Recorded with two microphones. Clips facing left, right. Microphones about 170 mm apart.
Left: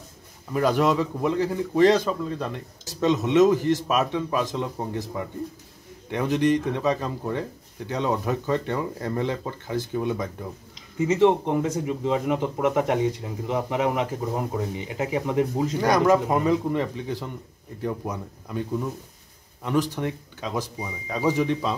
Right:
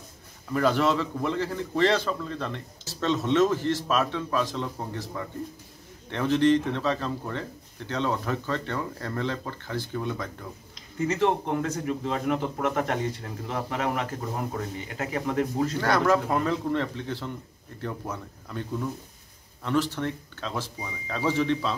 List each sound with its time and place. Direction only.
0.5 s speech: 15° left (ahead or behind)
11.0 s speech: 10° left (ahead or behind)